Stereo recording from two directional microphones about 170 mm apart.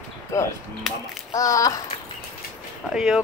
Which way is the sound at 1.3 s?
20° left (ahead or behind).